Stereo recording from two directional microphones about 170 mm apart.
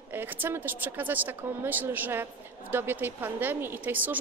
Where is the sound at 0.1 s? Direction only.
10° right (ahead or behind).